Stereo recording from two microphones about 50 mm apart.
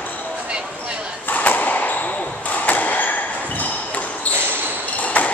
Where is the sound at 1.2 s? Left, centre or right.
Left.